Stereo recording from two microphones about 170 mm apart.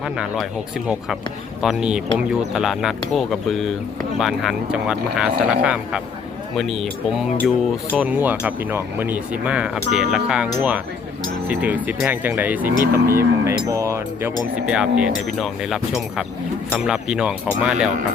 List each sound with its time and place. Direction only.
0.0 s speech: 5° right (ahead or behind)
1.6 s speech: 5° right (ahead or behind)
14.7 s speech: 5° right (ahead or behind)